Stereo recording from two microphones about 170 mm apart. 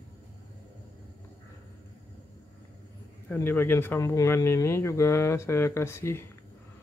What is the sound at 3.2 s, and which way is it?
Speech, 10° left (ahead or behind).